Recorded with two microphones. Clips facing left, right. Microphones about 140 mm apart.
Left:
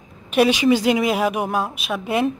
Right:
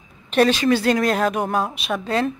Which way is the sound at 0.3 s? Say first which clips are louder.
Left 1 dB; 10° left (ahead or behind).